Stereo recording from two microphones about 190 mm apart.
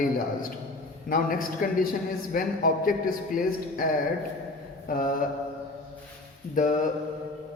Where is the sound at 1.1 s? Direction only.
45° left (ahead or behind).